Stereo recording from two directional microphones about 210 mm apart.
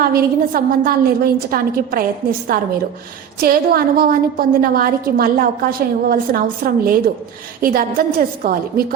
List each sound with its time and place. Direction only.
0.0 s a woman's voice: 45° right (ahead or behind)